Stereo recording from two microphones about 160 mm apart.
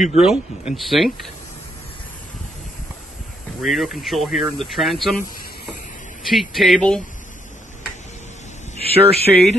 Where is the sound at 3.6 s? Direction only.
Centre (ahead or behind).